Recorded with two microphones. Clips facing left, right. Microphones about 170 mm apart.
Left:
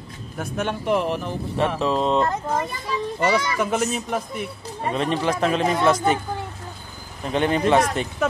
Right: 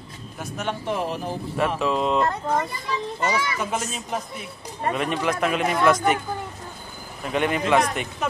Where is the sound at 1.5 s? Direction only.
30° left (ahead or behind).